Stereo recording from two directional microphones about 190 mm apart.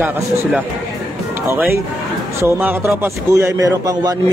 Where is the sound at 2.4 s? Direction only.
15° right (ahead or behind).